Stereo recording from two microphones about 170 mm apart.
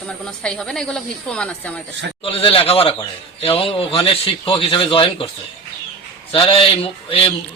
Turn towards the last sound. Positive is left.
turn(degrees=35)  # may be behind; listen again after turning